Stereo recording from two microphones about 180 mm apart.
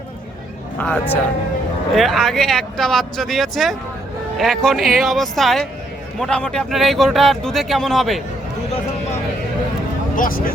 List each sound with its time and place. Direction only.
0.8 s a man's voice: 10° left (ahead or behind)
2.0 s speech: centre (ahead or behind)
10.2 s speech: 50° left (ahead or behind)